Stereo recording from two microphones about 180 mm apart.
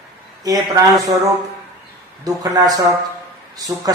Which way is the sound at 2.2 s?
20° right (ahead or behind).